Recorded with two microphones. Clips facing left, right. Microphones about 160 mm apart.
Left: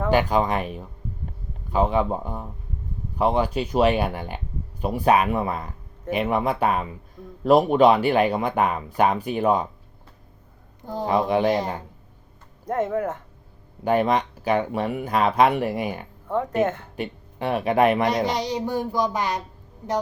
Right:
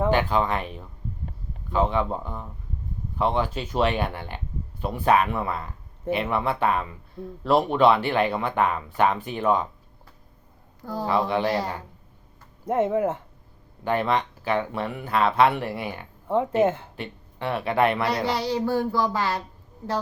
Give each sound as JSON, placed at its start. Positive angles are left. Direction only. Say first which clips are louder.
{"t": 0.1, "sound": "speech", "louder": "left 2 dB", "side_deg": 10}
{"t": 10.8, "sound": "speech", "louder": "left 2 dB", "side_deg": 20}
{"t": 12.6, "sound": "speech", "louder": "right 2 dB", "side_deg": -25}
{"t": 13.8, "sound": "speech", "louder": "left 3 dB", "side_deg": 15}